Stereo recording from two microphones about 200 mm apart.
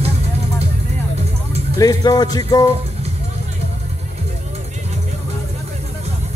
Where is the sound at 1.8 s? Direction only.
20° left (ahead or behind).